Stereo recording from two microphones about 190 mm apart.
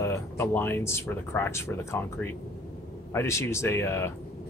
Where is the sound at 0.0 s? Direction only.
15° left (ahead or behind).